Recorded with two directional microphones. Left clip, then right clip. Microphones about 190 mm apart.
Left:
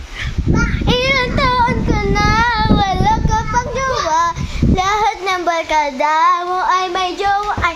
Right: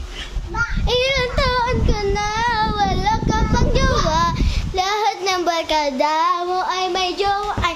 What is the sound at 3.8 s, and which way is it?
Child singing, 20° right (ahead or behind).